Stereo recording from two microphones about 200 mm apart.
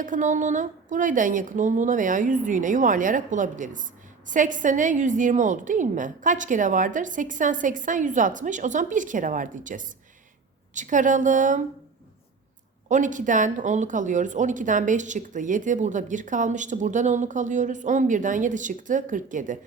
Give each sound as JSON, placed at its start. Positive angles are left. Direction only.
{"t": 0.0, "sound": "speech", "side_deg": -40}
{"t": 12.9, "sound": "speech", "side_deg": -40}